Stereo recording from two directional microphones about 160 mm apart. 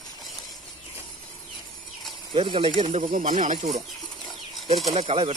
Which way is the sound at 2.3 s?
30° right (ahead or behind).